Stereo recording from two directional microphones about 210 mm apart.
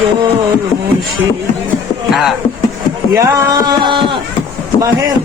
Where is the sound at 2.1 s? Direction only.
Centre (ahead or behind).